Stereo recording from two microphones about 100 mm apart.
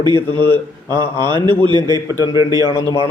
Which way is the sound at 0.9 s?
30° left (ahead or behind).